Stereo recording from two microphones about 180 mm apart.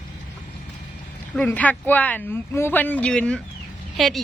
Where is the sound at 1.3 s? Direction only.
10° left (ahead or behind).